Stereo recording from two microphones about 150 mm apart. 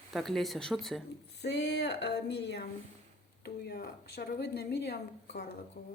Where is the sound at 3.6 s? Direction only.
80° left.